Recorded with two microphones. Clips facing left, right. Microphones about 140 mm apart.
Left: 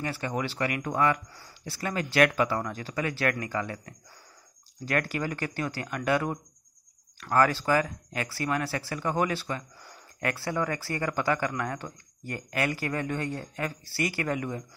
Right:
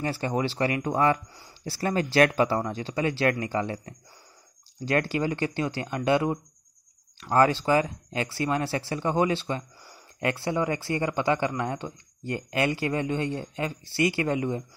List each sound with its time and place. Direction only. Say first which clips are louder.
0.0 s speech: right 4 dB; 30° right (ahead or behind)